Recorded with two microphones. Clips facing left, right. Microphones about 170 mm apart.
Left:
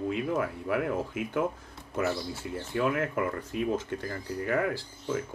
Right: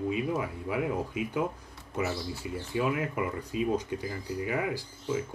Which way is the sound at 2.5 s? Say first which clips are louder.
Left 1 dB; centre (ahead or behind).